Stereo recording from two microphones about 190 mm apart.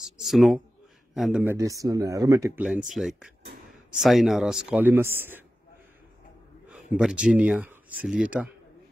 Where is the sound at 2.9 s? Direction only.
Centre (ahead or behind).